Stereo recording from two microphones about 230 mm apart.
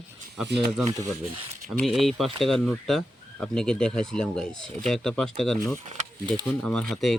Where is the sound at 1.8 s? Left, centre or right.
Centre.